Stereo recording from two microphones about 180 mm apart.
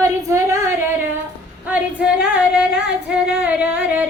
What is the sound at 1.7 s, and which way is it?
Female singing, 5° right (ahead or behind).